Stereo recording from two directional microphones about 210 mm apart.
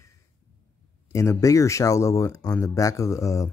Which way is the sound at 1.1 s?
15° left (ahead or behind).